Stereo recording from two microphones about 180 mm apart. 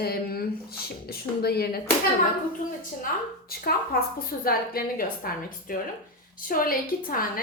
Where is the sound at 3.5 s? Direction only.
55° left (ahead or behind).